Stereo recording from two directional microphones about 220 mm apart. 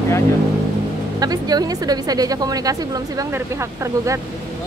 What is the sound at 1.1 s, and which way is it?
A woman's voice, 15° right (ahead or behind).